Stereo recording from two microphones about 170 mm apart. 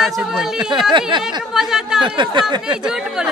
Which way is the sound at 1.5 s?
5° right (ahead or behind).